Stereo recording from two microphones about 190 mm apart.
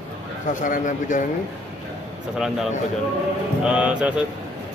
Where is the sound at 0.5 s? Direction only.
40° left (ahead or behind).